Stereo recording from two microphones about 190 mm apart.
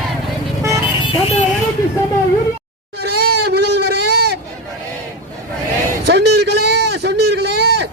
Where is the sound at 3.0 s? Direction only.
55° right (ahead or behind).